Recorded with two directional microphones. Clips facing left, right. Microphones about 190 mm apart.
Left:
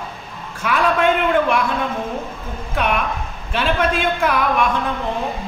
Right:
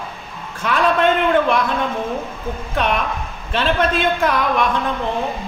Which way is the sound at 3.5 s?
10° left (ahead or behind).